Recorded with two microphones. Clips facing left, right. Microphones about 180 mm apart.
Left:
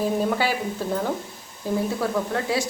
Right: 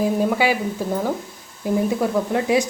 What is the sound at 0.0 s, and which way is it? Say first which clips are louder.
A woman's voice: right 4 dB; 10° right (ahead or behind).